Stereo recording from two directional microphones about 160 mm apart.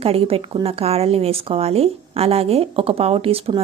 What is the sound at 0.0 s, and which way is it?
Speech, 35° right (ahead or behind).